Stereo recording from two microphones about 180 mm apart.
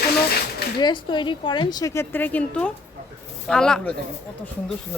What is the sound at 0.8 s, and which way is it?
A woman's voice, 25° left (ahead or behind).